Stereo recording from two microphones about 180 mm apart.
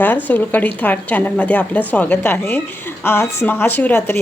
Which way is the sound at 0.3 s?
10° left (ahead or behind).